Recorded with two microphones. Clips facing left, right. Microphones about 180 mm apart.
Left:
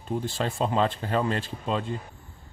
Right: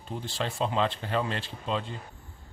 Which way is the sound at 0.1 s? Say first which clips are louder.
Left 5 dB; 50° left (ahead or behind).